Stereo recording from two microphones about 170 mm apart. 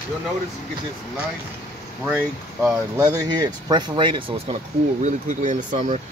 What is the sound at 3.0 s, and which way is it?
Speech, 20° right (ahead or behind).